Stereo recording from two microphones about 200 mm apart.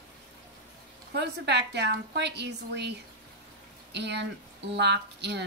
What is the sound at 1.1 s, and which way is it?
A woman's voice, 60° right (ahead or behind).